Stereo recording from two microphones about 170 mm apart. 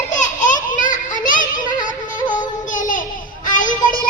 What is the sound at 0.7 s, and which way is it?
Children playing, 50° left (ahead or behind).